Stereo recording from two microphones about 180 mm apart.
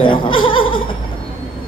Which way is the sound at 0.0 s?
25° left (ahead or behind).